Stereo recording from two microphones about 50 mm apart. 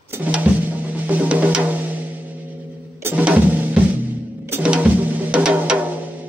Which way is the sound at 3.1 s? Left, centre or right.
Right.